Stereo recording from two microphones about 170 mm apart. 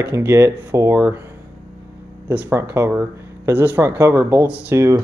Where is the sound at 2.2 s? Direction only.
15° right (ahead or behind).